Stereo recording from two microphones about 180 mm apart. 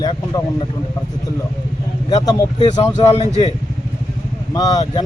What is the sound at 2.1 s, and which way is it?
Speech, 20° left (ahead or behind).